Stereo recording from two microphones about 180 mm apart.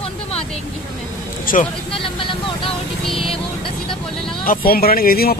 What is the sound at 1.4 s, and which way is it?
Speech, 50° left (ahead or behind).